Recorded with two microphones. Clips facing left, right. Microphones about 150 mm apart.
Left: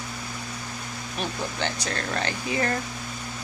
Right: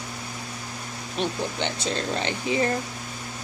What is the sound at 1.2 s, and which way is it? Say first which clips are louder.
Speech: right 3 dB; 25° right (ahead or behind).